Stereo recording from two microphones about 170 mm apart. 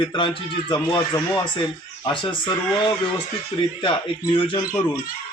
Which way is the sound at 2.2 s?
30° left (ahead or behind).